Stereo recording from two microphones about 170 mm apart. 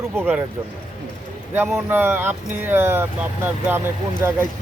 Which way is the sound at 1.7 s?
15° right (ahead or behind).